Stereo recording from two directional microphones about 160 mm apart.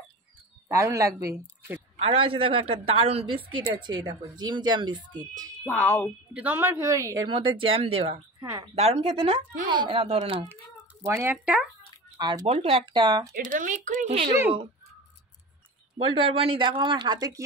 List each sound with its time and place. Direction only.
0.7 s speech: 20° right (ahead or behind)
2.0 s a woman's voice: 40° right (ahead or behind); by 5.6 s 20° right (ahead or behind)
5.7 s a woman's voice: 10° left (ahead or behind)
6.3 s speech: 10° right (ahead or behind); by 8.2 s 35° right (ahead or behind)
8.4 s speech: 15° right (ahead or behind)
8.7 s a woman's voice: 40° right (ahead or behind)
10.5 s speech: 15° right (ahead or behind)
12.2 s speech: 25° right (ahead or behind)
13.3 s speech: 55° right (ahead or behind)
16.0 s a woman's voice: 30° right (ahead or behind)